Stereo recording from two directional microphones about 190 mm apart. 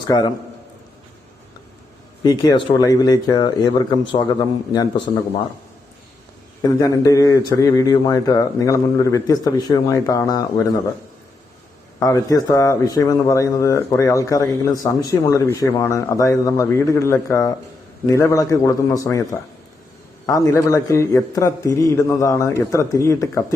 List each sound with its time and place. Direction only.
0.1 s speech: 20° left (ahead or behind)
2.2 s speech: 20° left (ahead or behind)
6.6 s a man's voice: 15° left (ahead or behind)
11.9 s a man's voice: 15° left (ahead or behind)